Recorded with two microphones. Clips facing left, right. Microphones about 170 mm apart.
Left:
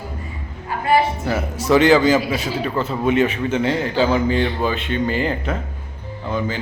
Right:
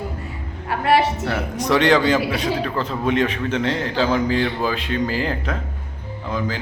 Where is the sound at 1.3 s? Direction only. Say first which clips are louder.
Left 6 dB; 5° left (ahead or behind).